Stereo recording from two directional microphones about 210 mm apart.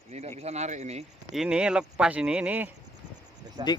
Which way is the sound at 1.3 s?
5° right (ahead or behind).